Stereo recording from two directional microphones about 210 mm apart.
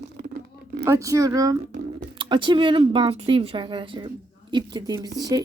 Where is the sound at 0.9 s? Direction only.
15° right (ahead or behind).